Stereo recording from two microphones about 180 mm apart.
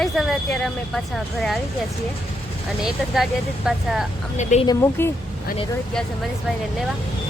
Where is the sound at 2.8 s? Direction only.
Centre (ahead or behind).